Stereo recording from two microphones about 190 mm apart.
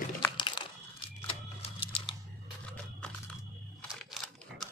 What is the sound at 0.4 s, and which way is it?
Crumpling, 25° left (ahead or behind).